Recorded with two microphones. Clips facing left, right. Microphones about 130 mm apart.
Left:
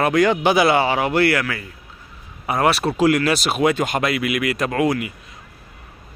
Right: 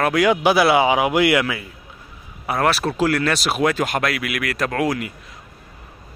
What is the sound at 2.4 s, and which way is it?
Speech, centre (ahead or behind).